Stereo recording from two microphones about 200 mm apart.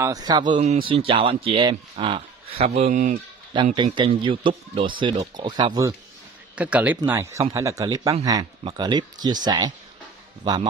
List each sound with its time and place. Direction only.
0.0 s speech: 20° right (ahead or behind); by 3.2 s 40° right (ahead or behind)
3.7 s speech: 25° right (ahead or behind)
6.5 s a man's voice: 5° right (ahead or behind); by 10.7 s 20° right (ahead or behind)